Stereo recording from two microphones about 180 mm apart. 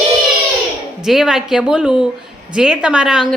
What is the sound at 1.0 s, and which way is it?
A woman's voice, 5° right (ahead or behind).